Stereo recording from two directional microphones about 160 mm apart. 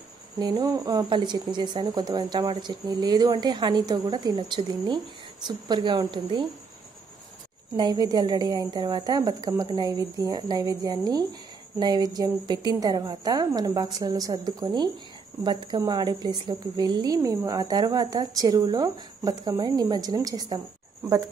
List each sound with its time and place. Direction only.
0.4 s a woman's voice: 25° right (ahead or behind)
7.7 s a woman's voice: 25° right (ahead or behind)